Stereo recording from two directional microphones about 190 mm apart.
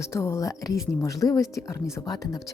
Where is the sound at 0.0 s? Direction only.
15° left (ahead or behind).